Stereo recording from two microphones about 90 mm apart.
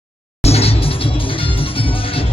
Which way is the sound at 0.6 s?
90° left.